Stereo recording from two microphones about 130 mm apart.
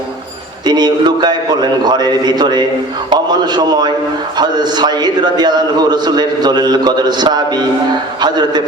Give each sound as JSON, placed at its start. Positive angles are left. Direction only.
{"t": 0.6, "sound": "a man's voice", "side_deg": -35}